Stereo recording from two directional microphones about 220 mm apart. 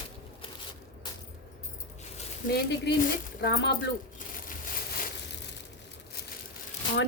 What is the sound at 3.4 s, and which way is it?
Speech, 50° left (ahead or behind).